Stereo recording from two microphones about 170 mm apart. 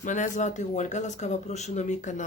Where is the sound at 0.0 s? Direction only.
45° left (ahead or behind).